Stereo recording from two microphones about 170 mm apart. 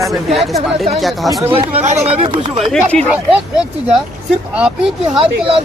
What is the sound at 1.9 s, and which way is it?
Speech, 35° right (ahead or behind).